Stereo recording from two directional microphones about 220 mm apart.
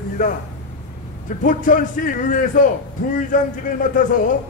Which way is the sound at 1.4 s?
35° left (ahead or behind).